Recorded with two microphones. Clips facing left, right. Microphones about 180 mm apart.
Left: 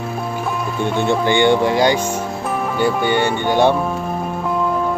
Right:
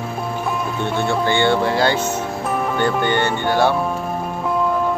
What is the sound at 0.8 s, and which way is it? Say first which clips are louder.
Speech: left 3 dB; 15° left (ahead or behind).